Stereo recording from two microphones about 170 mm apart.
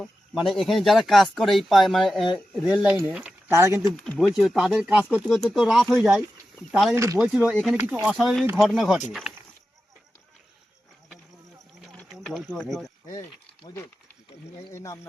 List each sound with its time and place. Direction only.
0.0 s speech: centre (ahead or behind); by 3.8 s 15° right (ahead or behind)
3.9 s speech: 5° left (ahead or behind)
4.2 s speech: 5° right (ahead or behind)
6.9 s speech: 15° right (ahead or behind)
11.9 s a sound: centre (ahead or behind)
12.5 s speech: centre (ahead or behind)
13.7 s speech: 20° left (ahead or behind)